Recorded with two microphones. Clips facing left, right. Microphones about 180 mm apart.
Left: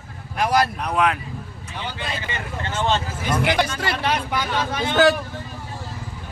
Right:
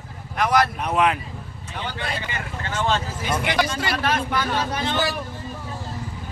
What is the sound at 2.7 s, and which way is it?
Speech, 25° left (ahead or behind).